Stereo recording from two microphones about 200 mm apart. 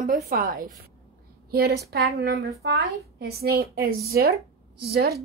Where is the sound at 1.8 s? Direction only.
55° right (ahead or behind).